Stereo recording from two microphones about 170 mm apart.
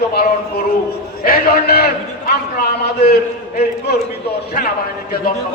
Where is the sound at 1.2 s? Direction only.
60° left (ahead or behind).